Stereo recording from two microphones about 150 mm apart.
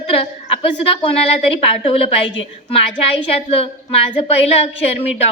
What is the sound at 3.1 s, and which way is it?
A woman's voice, 40° left (ahead or behind).